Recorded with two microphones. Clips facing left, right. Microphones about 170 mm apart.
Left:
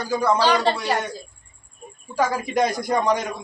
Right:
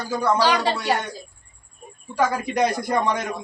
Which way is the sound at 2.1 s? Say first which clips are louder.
Even; 5° left (ahead or behind).